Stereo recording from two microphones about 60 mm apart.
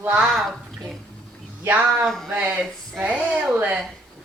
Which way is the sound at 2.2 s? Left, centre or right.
Centre.